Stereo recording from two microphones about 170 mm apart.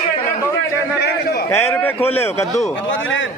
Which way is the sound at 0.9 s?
75° left (ahead or behind).